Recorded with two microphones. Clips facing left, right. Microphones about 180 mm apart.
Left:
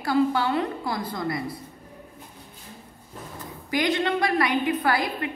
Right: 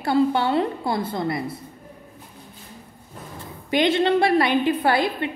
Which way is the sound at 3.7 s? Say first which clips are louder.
Right 5 dB; 25° right (ahead or behind).